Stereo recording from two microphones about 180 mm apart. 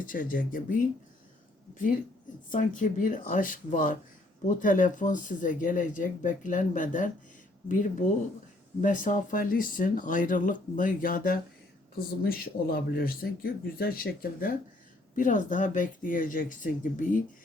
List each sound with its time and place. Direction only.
0.0 s speech: 50° left (ahead or behind)
2.5 s speech: 45° left (ahead or behind)